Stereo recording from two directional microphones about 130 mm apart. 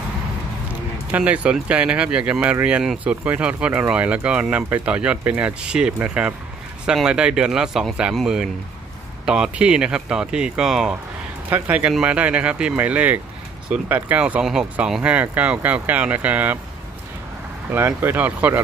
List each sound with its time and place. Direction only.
1.1 s speech: 10° right (ahead or behind)
17.6 s speech: 15° right (ahead or behind)